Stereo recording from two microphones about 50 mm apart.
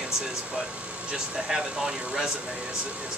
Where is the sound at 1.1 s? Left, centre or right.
Centre.